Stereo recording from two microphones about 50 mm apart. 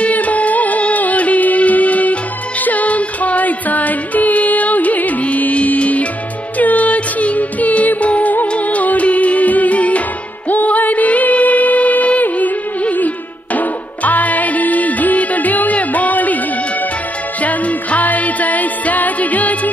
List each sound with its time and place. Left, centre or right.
0.0 s music: left
17.4 s music: left